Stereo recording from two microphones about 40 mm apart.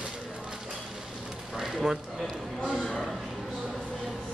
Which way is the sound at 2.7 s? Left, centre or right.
Centre.